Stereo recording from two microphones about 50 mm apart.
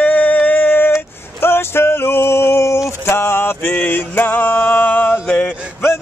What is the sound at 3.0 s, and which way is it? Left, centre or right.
Music, left.